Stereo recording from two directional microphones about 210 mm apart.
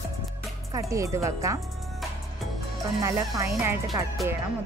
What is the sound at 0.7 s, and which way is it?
Speech, 15° right (ahead or behind).